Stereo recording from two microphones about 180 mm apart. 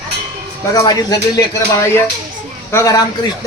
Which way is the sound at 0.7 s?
20° left (ahead or behind).